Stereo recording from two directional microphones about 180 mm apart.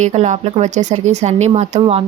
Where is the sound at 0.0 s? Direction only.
40° right (ahead or behind).